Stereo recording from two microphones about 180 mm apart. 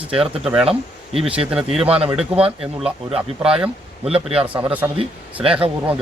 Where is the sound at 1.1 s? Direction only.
30° right (ahead or behind).